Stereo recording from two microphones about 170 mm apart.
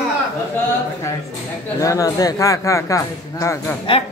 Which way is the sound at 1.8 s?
20° left (ahead or behind).